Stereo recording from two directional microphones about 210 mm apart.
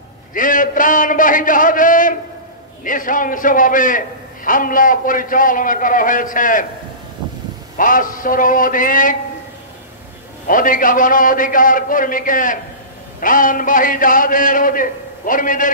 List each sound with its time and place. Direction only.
0.3 s a man's voice: 40° left (ahead or behind)
7.7 s a man's voice: 40° left (ahead or behind)
10.4 s a man's voice: 40° left (ahead or behind)